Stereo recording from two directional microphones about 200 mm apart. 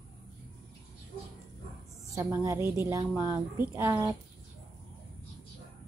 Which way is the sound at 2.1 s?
15° right (ahead or behind).